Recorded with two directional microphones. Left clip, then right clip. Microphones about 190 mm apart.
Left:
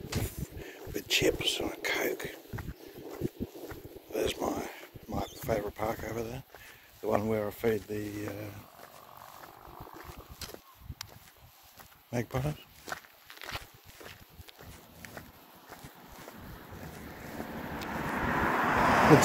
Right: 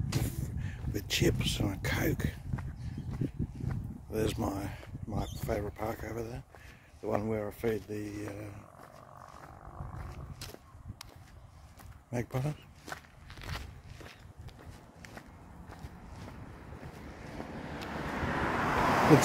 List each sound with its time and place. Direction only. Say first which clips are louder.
0.3 s speech: left 1 dB; 30° right (ahead or behind)
2.5 s a sound: left 2 dB; 55° left (ahead or behind)
4.1 s speech: left 2 dB; 25° right (ahead or behind)
10.4 s a sound: left 5 dB; 55° left (ahead or behind)
12.1 s speech: left 2 dB; 25° right (ahead or behind)
12.8 s walk: left 3 dB; 55° left (ahead or behind)
17.1 s vehicle: left 3 dB; 10° right (ahead or behind)